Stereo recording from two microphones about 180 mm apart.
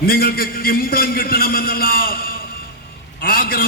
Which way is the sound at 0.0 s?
55° left (ahead or behind).